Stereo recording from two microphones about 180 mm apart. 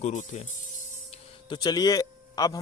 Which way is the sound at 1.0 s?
35° left (ahead or behind).